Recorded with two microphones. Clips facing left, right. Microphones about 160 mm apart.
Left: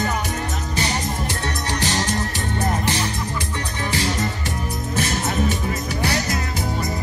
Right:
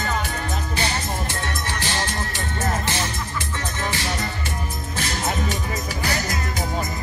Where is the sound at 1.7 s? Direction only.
20° left (ahead or behind).